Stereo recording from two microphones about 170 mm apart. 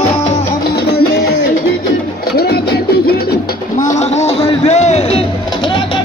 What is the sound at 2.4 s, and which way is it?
Music, 70° left (ahead or behind).